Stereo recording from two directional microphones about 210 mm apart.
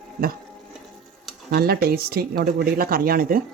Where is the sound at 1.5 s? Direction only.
45° right (ahead or behind).